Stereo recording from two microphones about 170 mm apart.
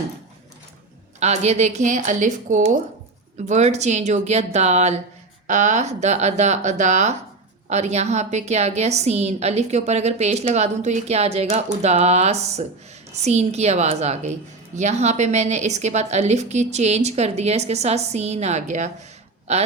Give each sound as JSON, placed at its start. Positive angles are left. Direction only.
{"t": 1.2, "sound": "a woman's voice", "side_deg": -40}